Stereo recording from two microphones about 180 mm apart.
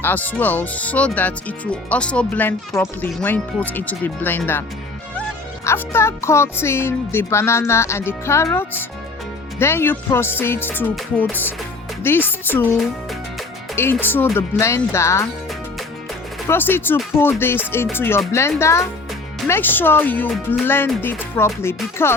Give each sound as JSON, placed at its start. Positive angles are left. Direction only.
{"t": 0.0, "sound": "speech", "side_deg": 10}
{"t": 5.6, "sound": "speech", "side_deg": 15}
{"t": 9.6, "sound": "speech", "side_deg": 15}
{"t": 13.7, "sound": "speech", "side_deg": 10}
{"t": 16.5, "sound": "speech", "side_deg": 10}